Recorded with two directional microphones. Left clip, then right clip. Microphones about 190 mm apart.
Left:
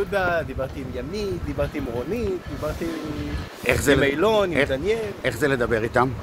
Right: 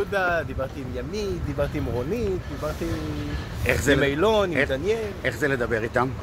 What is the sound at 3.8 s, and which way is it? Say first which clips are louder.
Speech: left 1 dB; centre (ahead or behind).